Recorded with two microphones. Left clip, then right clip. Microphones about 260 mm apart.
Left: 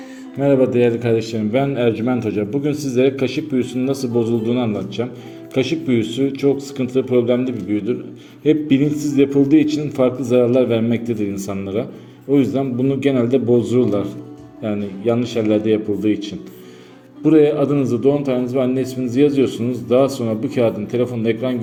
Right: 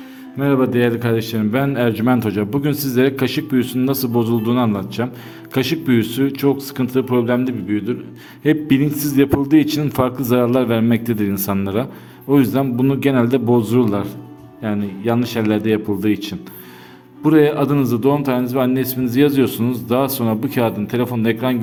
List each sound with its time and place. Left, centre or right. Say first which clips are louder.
0.3 s a man's voice: left 2 dB; centre